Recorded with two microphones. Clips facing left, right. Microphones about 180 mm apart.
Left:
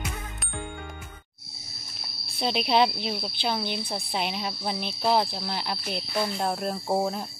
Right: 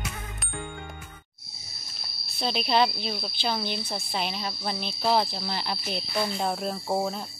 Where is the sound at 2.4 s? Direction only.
15° left (ahead or behind).